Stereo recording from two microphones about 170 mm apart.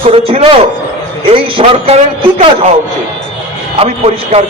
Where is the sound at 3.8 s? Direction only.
35° right (ahead or behind).